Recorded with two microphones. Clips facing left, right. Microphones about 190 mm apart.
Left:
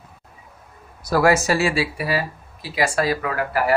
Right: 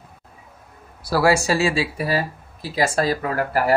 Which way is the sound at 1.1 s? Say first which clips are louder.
Left 1 dB; 10° right (ahead or behind).